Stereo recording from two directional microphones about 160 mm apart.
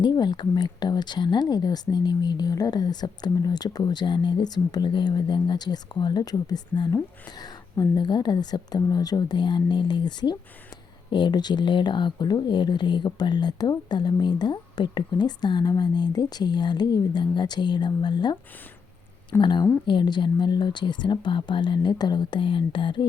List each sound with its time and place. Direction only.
0.0 s speech: 25° left (ahead or behind)
19.4 s speech: 30° left (ahead or behind)